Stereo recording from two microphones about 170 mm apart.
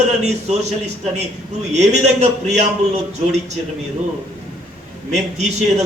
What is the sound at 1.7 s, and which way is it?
A man's voice, 40° right (ahead or behind).